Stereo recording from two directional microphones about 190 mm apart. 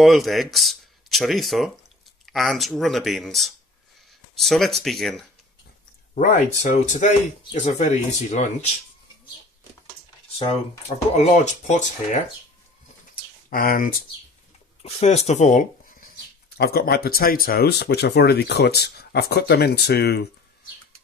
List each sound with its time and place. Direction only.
0.0 s speech: centre (ahead or behind)
6.1 s speech: 40° left (ahead or behind)
11.1 s speech: 35° left (ahead or behind)
13.1 s a sound: 45° left (ahead or behind)
14.8 s speech: 35° left (ahead or behind)
16.4 s speech: 55° left (ahead or behind)